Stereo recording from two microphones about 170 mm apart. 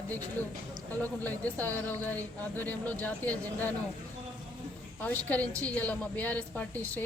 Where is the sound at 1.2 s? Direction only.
10° left (ahead or behind).